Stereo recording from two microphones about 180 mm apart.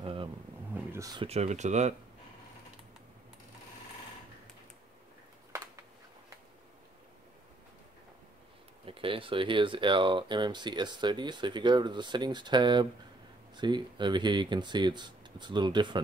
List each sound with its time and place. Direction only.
0.0 s vehicle: 30° right (ahead or behind)
0.7 s a sound: 15° right (ahead or behind)
1.2 s speech: 35° right (ahead or behind)
8.8 s speech: 30° right (ahead or behind)